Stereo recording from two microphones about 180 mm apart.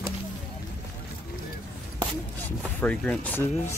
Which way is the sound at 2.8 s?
10° left (ahead or behind).